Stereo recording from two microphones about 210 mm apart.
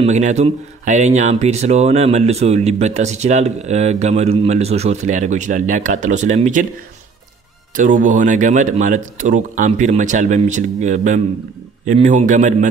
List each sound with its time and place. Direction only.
0.0 s speech: 35° right (ahead or behind)
7.7 s speech: 40° right (ahead or behind)